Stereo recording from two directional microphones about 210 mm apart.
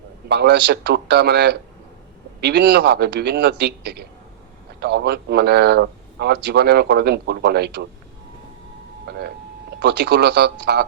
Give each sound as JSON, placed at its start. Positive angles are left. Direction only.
{"t": 0.3, "sound": "a man's voice", "side_deg": -55}
{"t": 9.0, "sound": "a sound", "side_deg": -50}
{"t": 9.8, "sound": "a man's voice", "side_deg": -55}